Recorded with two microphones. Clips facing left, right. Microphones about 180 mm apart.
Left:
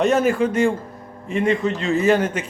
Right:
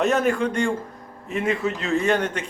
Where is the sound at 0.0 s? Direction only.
Centre (ahead or behind).